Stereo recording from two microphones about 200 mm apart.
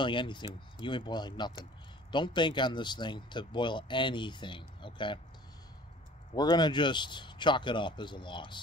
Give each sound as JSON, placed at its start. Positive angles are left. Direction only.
{"t": 0.0, "sound": "speech", "side_deg": 25}
{"t": 6.3, "sound": "speech", "side_deg": 20}